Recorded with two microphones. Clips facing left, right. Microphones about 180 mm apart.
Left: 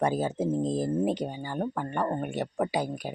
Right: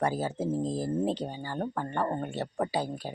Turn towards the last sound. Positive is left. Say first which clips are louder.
# left 2 dB
turn(degrees=15)  # may be behind; listen again after turning